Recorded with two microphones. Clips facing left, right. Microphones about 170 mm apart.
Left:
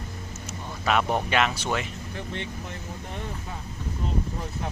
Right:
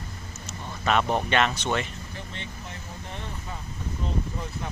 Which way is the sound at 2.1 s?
60° left (ahead or behind).